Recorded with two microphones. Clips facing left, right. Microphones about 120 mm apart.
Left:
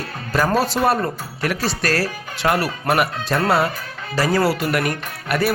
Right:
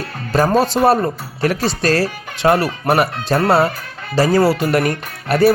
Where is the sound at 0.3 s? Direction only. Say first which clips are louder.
Right 4 dB; 25° right (ahead or behind).